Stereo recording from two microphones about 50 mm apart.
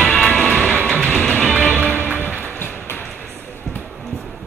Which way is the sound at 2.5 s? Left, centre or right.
Left.